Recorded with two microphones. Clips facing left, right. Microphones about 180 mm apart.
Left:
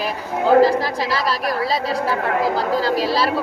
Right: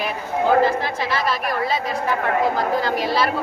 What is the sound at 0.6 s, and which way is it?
A woman's voice, 35° left (ahead or behind).